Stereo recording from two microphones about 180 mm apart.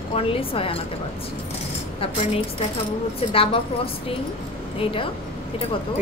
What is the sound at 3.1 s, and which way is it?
A woman's voice, 30° left (ahead or behind).